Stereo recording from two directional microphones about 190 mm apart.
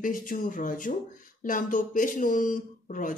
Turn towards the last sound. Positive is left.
turn(degrees=45)  # may be behind; listen again after turning